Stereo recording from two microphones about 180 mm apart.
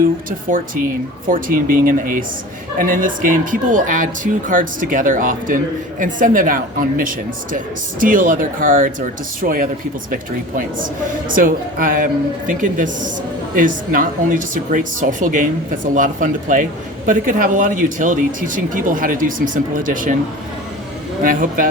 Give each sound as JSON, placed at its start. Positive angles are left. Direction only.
{"t": 0.0, "sound": "speech", "side_deg": -50}
{"t": 21.2, "sound": "speech", "side_deg": -50}